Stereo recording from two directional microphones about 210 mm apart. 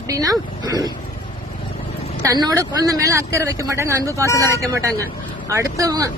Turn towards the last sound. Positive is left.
turn(degrees=-15)  # may be behind; listen again after turning